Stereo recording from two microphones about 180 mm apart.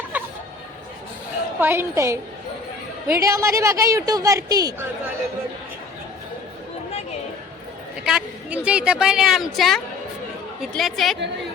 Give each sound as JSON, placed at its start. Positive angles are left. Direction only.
{"t": 0.1, "sound": "chatter", "side_deg": -10}
{"t": 1.5, "sound": "a woman's voice", "side_deg": -10}
{"t": 8.0, "sound": "a woman's voice", "side_deg": -5}